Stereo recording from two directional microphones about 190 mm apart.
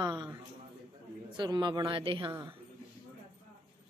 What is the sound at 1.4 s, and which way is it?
Speech, 25° right (ahead or behind).